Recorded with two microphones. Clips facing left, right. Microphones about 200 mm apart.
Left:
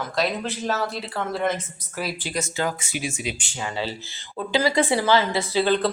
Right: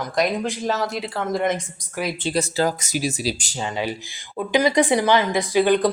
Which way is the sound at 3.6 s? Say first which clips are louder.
Right 3 dB; 15° right (ahead or behind).